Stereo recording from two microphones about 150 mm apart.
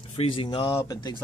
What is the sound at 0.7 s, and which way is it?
Speech, 25° left (ahead or behind).